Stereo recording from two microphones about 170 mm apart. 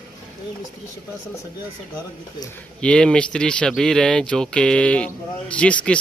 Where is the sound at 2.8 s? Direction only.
5° left (ahead or behind).